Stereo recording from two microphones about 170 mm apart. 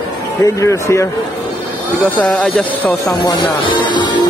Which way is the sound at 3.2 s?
30° left (ahead or behind).